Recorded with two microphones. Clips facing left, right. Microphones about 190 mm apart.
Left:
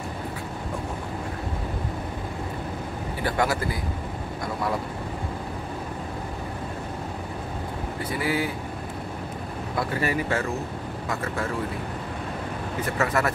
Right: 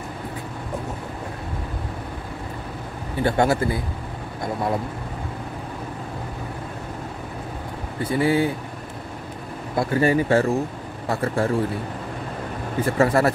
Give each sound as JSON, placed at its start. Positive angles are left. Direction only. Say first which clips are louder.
{"t": 3.3, "sound": "speech", "louder": "right 5 dB", "side_deg": -25}
{"t": 8.0, "sound": "speech", "louder": "right 7 dB", "side_deg": -25}
{"t": 9.8, "sound": "speech", "louder": "right 7 dB", "side_deg": -30}
{"t": 12.8, "sound": "speech", "louder": "right 7 dB", "side_deg": -30}